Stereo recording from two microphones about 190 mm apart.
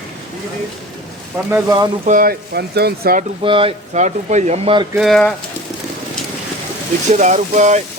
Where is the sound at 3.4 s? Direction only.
30° right (ahead or behind).